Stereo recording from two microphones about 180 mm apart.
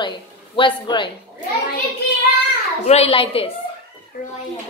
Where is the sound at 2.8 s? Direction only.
35° left (ahead or behind).